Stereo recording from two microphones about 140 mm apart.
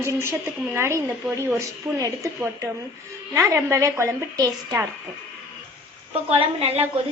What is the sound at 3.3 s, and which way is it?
A woman's voice, 20° right (ahead or behind).